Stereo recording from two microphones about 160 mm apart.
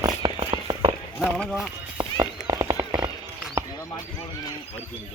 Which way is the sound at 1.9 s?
25° right (ahead or behind).